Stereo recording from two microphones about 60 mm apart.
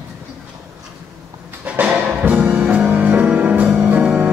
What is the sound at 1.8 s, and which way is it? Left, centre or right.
Music, right.